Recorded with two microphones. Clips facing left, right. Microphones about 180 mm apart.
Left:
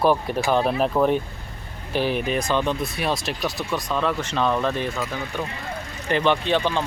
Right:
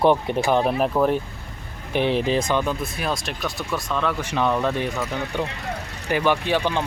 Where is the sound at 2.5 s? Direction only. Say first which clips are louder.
Even; 10° right (ahead or behind).